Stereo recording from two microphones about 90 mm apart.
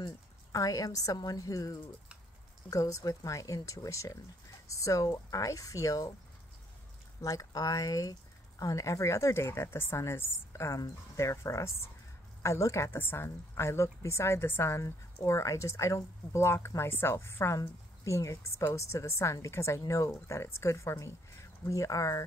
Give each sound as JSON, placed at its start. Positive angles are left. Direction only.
{"t": 0.0, "sound": "a woman's voice", "side_deg": 40}
{"t": 7.2, "sound": "speech", "side_deg": 40}